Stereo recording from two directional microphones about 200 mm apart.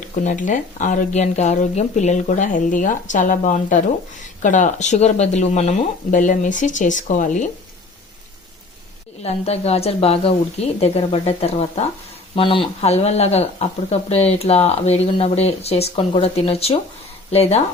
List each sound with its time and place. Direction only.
0.3 s a woman's voice: 40° left (ahead or behind)
9.2 s a woman's voice: 30° left (ahead or behind)